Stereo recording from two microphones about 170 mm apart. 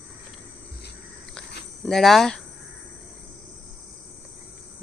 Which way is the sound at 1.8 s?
Centre (ahead or behind).